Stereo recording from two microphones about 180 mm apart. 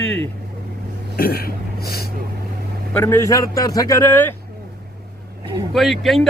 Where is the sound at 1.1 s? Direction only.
55° left (ahead or behind).